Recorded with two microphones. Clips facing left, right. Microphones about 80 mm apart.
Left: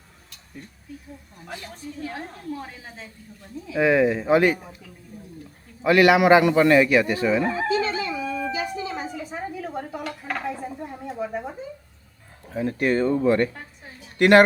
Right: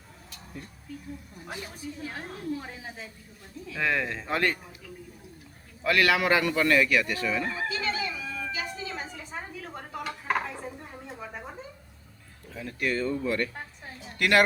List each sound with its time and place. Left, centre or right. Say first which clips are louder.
0.3 s a sound: even; centre
1.5 s a woman's voice: left 2 dB; centre
3.7 s speech: left 10 dB; centre
5.8 s speech: left 8 dB; left
11.2 s speech: left 12 dB; centre
12.5 s speech: left 8 dB; left